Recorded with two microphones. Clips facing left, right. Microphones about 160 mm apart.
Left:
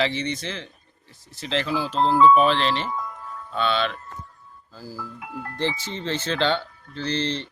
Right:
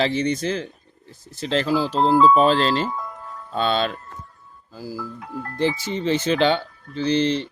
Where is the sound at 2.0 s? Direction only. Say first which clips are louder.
Right 2 dB; 10° right (ahead or behind).